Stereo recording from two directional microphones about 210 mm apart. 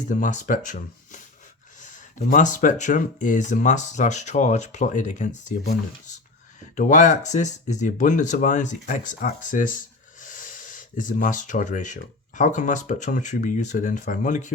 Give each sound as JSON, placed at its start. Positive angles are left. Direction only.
{"t": 0.1, "sound": "speech", "side_deg": 35}
{"t": 6.7, "sound": "speech", "side_deg": 35}